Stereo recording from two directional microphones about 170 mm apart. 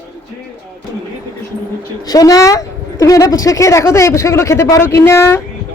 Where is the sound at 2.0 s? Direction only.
20° left (ahead or behind).